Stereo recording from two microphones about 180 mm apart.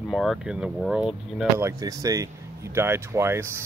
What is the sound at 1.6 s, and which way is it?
Speech, 20° right (ahead or behind).